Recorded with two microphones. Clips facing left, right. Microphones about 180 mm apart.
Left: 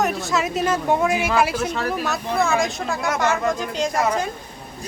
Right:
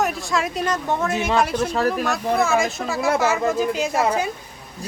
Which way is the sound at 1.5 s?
35° right (ahead or behind).